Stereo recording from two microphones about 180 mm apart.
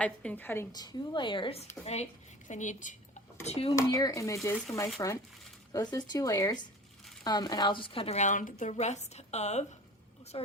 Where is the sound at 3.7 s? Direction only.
20° left (ahead or behind).